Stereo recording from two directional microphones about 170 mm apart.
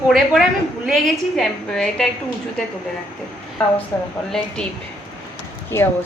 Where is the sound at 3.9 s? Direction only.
10° left (ahead or behind).